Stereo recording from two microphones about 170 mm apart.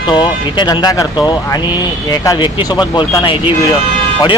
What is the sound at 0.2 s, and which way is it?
Speech, 25° left (ahead or behind).